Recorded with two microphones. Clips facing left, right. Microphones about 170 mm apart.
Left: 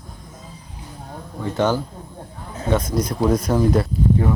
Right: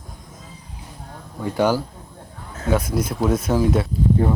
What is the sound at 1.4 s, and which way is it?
Speech, 10° right (ahead or behind).